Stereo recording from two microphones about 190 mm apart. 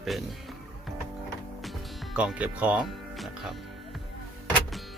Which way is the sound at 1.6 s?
Centre (ahead or behind).